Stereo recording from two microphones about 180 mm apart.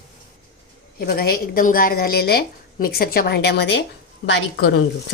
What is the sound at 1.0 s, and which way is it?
A woman's voice, 60° left (ahead or behind).